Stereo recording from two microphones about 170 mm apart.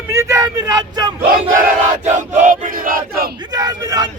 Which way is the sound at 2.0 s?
45° right (ahead or behind).